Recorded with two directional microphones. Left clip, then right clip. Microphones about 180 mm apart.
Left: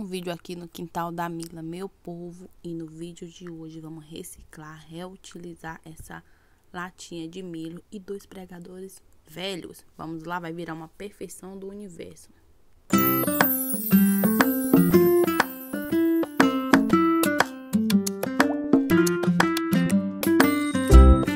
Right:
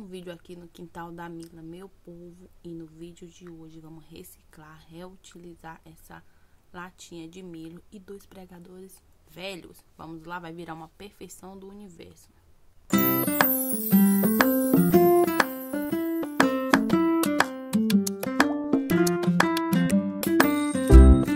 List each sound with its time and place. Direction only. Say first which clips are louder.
0.0 s speech: left 8 dB; 45° left (ahead or behind)
2.6 s speech: left 5 dB; 35° left (ahead or behind)
12.8 s music: left 2 dB; centre (ahead or behind)